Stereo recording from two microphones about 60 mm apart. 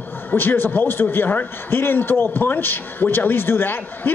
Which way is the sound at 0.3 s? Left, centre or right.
Left.